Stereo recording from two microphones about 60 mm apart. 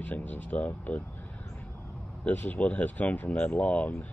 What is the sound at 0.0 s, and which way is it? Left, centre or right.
Speech, left.